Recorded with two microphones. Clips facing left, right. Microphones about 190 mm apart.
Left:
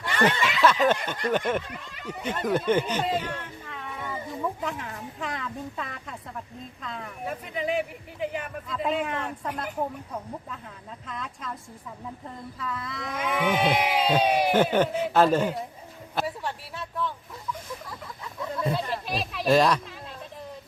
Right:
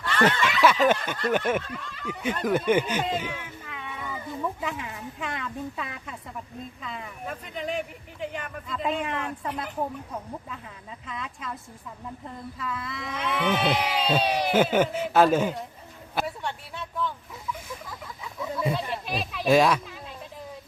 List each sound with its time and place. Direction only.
0.0 s snicker: 15° left (ahead or behind)
0.4 s speech: 5° right (ahead or behind)
1.6 s speech: 15° left (ahead or behind)
2.5 s speech: 10° right (ahead or behind)
11.0 s speech: centre (ahead or behind)
12.5 s speech: centre (ahead or behind)
13.1 s speech: 10° left (ahead or behind)
14.5 s speech: 5° right (ahead or behind)
16.1 s a sound: centre (ahead or behind)